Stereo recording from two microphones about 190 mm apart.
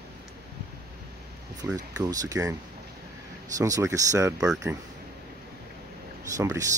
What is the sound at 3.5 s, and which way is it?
Speech, 20° right (ahead or behind).